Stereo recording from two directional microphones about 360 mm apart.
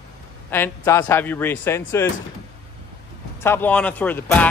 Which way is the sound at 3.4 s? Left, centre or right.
Centre.